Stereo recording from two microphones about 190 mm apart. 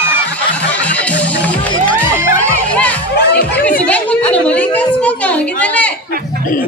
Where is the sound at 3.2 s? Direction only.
55° left (ahead or behind).